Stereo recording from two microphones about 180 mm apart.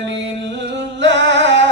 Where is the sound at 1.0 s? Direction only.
80° right.